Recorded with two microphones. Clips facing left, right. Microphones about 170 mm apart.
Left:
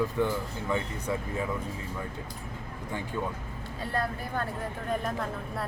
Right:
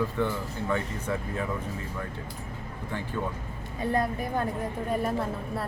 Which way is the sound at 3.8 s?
20° right (ahead or behind).